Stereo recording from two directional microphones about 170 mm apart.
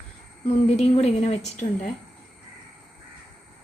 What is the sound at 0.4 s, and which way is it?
Speech, 40° left (ahead or behind).